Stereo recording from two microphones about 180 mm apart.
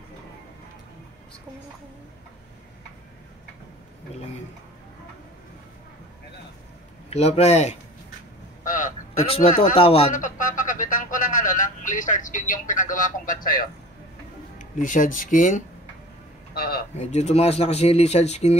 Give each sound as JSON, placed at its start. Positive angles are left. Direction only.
{"t": 7.1, "sound": "speech", "side_deg": 35}
{"t": 8.6, "sound": "a sound", "side_deg": 50}
{"t": 9.2, "sound": "speech", "side_deg": 35}
{"t": 10.1, "sound": "speech", "side_deg": 45}
{"t": 16.5, "sound": "a sound", "side_deg": 60}
{"t": 16.9, "sound": "speech", "side_deg": 40}